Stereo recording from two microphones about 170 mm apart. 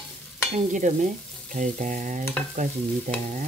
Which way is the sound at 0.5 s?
45° right (ahead or behind).